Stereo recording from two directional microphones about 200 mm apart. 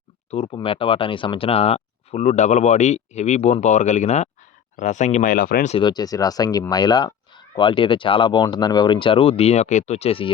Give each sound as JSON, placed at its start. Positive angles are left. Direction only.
{"t": 0.3, "sound": "speech", "side_deg": 30}
{"t": 5.7, "sound": "speech", "side_deg": 20}